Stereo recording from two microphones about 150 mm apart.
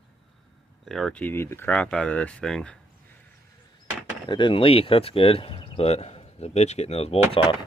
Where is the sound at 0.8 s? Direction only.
5° left (ahead or behind).